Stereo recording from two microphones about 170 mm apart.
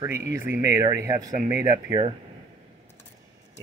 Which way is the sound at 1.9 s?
30° right (ahead or behind).